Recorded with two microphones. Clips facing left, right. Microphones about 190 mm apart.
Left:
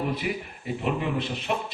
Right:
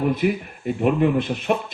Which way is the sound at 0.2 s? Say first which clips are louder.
Right 9 dB; 50° right (ahead or behind).